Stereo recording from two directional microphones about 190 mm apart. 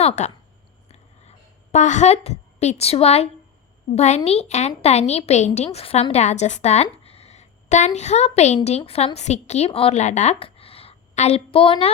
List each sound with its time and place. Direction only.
0.0 s speech: 35° left (ahead or behind)
0.9 s a sound: 35° left (ahead or behind)
3.9 s a woman's voice: 35° left (ahead or behind)